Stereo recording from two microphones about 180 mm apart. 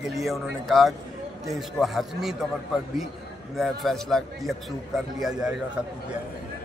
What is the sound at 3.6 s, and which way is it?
A man's voice, centre (ahead or behind).